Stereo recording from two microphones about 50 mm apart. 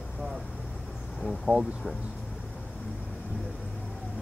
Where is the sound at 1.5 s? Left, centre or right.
Right.